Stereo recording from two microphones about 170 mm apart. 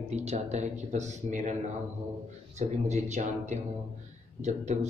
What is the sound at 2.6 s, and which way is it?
Speech, 40° right (ahead or behind).